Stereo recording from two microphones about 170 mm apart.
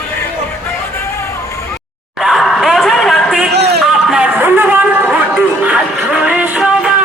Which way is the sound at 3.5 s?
75° right (ahead or behind).